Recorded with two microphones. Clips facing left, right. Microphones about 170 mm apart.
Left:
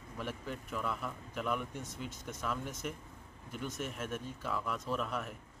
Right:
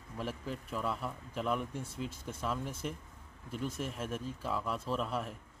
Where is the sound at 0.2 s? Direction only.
30° right (ahead or behind).